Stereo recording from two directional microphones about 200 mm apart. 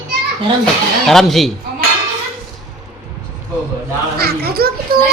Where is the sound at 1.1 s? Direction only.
Centre (ahead or behind).